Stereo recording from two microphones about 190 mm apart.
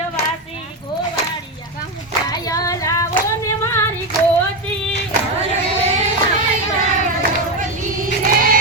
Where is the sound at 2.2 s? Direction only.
20° left (ahead or behind).